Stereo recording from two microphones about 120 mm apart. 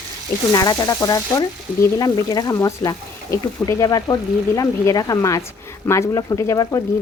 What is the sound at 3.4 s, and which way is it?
Speech, 30° left (ahead or behind).